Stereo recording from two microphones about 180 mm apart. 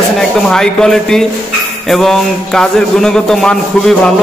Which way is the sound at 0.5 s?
5° left (ahead or behind).